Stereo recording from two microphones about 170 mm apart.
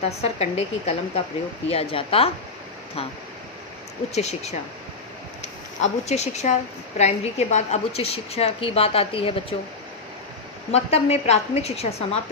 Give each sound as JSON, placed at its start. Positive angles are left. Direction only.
{"t": 0.0, "sound": "a woman's voice", "side_deg": 40}
{"t": 4.1, "sound": "a woman's voice", "side_deg": 40}
{"t": 5.8, "sound": "a woman's voice", "side_deg": 40}
{"t": 10.7, "sound": "a woman's voice", "side_deg": 40}